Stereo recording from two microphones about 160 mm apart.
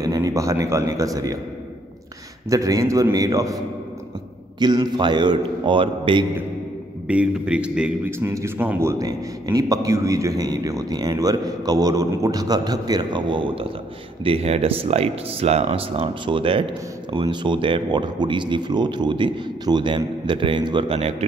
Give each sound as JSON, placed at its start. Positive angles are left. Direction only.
{"t": 0.0, "sound": "a man's voice", "side_deg": -20}
{"t": 2.5, "sound": "a man's voice", "side_deg": -20}
{"t": 7.1, "sound": "a man's voice", "side_deg": -5}